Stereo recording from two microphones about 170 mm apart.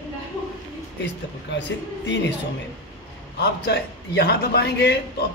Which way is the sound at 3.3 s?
75° left (ahead or behind).